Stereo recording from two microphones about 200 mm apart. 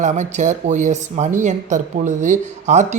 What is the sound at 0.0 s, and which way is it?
A man's voice, 35° right (ahead or behind).